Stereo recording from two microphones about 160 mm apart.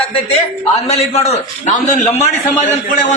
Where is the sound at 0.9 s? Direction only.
40° left (ahead or behind).